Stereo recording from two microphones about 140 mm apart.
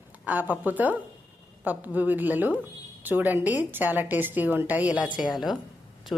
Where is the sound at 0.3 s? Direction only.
10° right (ahead or behind).